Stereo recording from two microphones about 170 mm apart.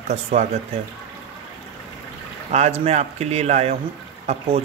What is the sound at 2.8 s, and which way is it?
Speech, 40° right (ahead or behind).